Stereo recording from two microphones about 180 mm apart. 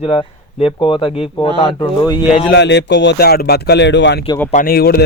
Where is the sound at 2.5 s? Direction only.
75° left (ahead or behind).